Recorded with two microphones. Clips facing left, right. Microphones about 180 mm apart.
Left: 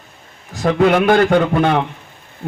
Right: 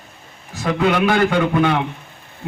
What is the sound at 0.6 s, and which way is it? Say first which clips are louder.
A man's voice: left 4 dB; 50° left (ahead or behind).